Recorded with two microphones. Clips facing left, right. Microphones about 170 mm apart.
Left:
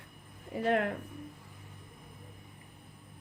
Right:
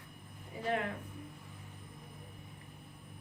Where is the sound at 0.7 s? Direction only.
60° left (ahead or behind).